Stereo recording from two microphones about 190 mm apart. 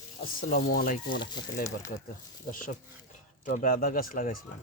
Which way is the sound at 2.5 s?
45° left (ahead or behind).